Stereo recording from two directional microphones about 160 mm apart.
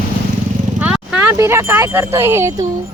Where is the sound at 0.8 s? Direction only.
5° right (ahead or behind).